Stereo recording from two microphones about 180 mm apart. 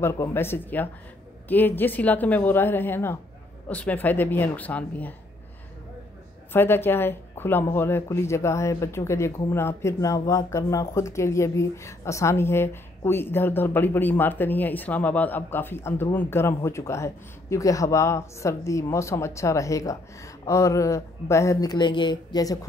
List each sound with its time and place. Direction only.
0.0 s a woman's voice: 15° left (ahead or behind)
6.5 s a woman's voice: 10° left (ahead or behind)